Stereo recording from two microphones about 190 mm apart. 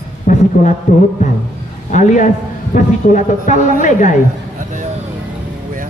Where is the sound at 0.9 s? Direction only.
40° left (ahead or behind).